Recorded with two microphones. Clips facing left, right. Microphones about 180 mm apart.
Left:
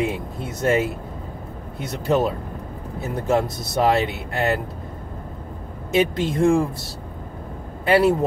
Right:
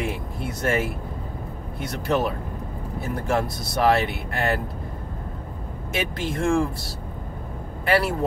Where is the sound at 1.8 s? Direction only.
20° left (ahead or behind).